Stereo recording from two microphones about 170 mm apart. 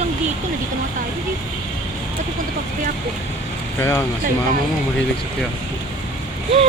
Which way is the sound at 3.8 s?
20° left (ahead or behind).